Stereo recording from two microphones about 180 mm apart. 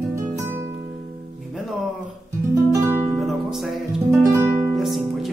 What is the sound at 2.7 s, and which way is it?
Music, 15° right (ahead or behind).